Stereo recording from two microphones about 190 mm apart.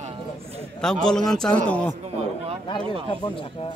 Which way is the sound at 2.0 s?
35° right (ahead or behind).